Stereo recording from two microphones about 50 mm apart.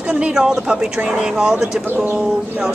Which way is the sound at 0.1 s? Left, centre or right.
Centre.